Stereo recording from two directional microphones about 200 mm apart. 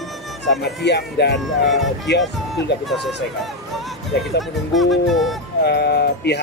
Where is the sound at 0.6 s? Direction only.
55° left (ahead or behind).